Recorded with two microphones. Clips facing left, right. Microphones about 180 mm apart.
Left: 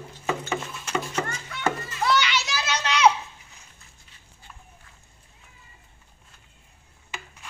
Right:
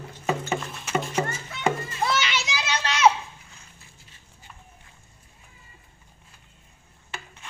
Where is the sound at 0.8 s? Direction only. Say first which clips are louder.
Right 2 dB; 10° right (ahead or behind).